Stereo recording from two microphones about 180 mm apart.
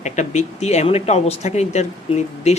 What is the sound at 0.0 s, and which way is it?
Speech, 40° left (ahead or behind).